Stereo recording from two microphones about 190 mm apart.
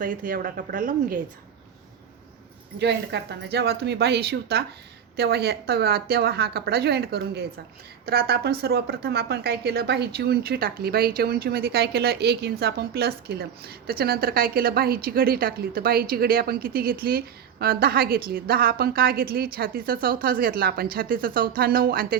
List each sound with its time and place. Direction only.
0.0 s a woman's voice: 45° right (ahead or behind)
2.7 s a woman's voice: 60° right (ahead or behind)